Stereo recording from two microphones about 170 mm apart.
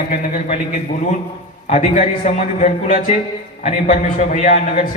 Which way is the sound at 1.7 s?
45° left (ahead or behind).